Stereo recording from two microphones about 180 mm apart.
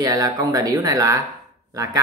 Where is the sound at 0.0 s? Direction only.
20° right (ahead or behind).